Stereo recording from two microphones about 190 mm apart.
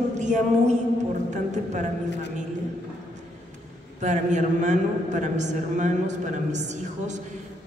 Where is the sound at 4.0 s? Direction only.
40° right (ahead or behind).